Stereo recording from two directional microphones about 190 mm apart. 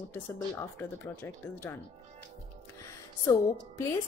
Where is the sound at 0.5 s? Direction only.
10° left (ahead or behind).